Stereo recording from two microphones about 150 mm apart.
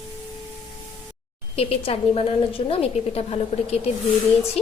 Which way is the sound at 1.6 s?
40° left (ahead or behind).